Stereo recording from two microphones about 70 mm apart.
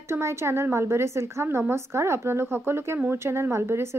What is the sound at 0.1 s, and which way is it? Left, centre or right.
A woman's voice, right.